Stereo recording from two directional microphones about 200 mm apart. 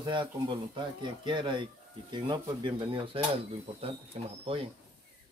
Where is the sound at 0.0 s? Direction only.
25° right (ahead or behind).